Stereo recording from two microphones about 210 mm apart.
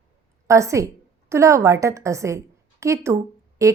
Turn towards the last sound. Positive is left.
turn(degrees=-15)  # may be behind; listen again after turning